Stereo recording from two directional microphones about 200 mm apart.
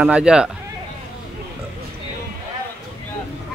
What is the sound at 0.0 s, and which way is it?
Speech, 5° right (ahead or behind).